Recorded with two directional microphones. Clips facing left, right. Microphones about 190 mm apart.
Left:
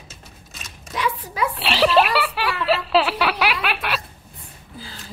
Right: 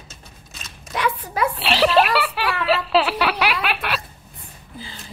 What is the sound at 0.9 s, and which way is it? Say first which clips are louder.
Hands: right 2 dB; 55° right (ahead or behind).